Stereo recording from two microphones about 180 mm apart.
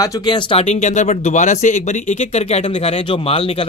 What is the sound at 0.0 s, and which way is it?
Speech, 20° left (ahead or behind).